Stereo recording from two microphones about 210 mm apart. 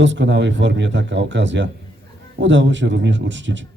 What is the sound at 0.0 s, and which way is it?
A man's voice, 60° right (ahead or behind).